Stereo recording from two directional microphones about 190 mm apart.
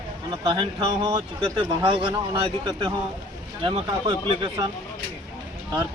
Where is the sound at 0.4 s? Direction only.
25° right (ahead or behind).